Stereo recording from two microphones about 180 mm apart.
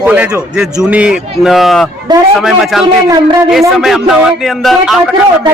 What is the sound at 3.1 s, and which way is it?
Speech, 20° right (ahead or behind).